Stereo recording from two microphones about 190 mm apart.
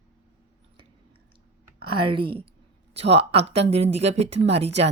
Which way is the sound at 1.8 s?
25° right (ahead or behind).